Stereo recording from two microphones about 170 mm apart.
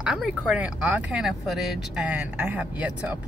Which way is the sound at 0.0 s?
5° right (ahead or behind).